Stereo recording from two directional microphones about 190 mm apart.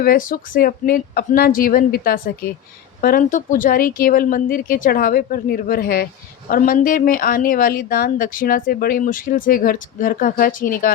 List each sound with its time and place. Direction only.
0.0 s speech: 50° left (ahead or behind)